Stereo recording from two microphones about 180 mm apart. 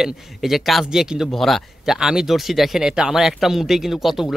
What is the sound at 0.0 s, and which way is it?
A man's voice, centre (ahead or behind).